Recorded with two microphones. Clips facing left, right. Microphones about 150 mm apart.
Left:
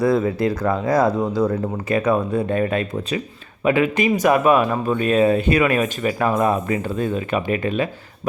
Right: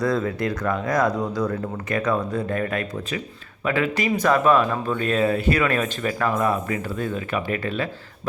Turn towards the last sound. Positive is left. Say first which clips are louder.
# left 4 dB
turn(degrees=15)  # may be behind; listen again after turning